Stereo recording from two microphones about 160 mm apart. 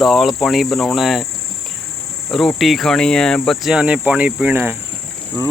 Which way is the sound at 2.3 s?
Centre (ahead or behind).